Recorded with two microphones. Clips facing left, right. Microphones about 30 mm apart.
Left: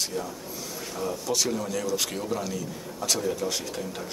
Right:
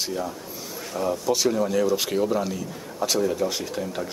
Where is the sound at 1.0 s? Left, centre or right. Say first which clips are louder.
Right 5 dB; centre.